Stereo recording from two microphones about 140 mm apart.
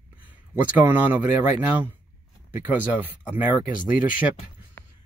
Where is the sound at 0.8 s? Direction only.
10° right (ahead or behind).